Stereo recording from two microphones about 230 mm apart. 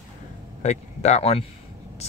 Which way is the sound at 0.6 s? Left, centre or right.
Left.